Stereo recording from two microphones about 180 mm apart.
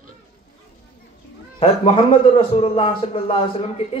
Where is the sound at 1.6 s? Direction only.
30° left (ahead or behind).